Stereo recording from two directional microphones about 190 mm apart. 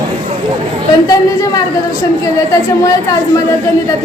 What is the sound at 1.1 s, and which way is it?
Speech, 15° left (ahead or behind).